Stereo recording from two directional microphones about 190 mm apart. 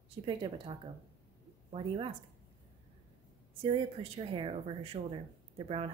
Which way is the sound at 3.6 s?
30° right (ahead or behind).